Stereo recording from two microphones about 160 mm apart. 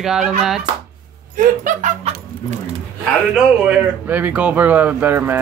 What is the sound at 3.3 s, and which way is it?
Speech, 10° right (ahead or behind).